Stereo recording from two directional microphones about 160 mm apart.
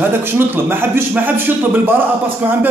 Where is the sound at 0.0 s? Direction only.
15° right (ahead or behind).